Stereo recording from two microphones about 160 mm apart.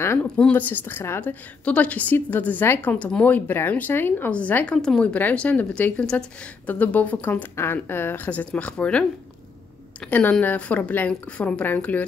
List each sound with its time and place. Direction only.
0.0 s a woman's voice: 15° left (ahead or behind)
10.0 s a woman's voice: 10° left (ahead or behind)